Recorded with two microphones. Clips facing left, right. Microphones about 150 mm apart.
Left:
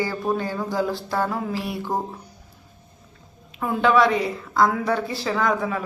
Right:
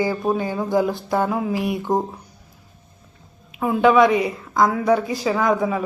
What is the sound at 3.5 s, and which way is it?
A woman's voice, 10° right (ahead or behind).